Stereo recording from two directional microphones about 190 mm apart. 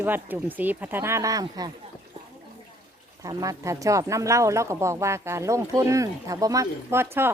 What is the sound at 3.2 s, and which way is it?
Speech, 15° right (ahead or behind).